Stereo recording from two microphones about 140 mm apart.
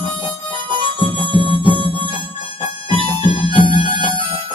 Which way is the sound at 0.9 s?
35° left (ahead or behind).